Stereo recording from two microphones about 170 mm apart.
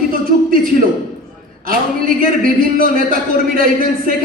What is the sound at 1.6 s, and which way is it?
A man's voice, 55° right (ahead or behind).